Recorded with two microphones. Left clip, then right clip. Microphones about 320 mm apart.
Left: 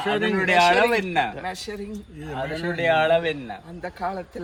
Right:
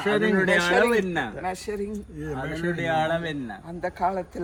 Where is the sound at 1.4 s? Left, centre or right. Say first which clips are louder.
Right 1 dB; centre.